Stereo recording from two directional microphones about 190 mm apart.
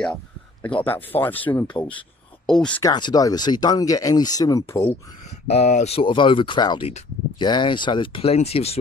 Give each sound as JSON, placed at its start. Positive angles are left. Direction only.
{"t": 0.0, "sound": "speech", "side_deg": 5}
{"t": 2.8, "sound": "speech", "side_deg": 20}
{"t": 5.5, "sound": "speech", "side_deg": 35}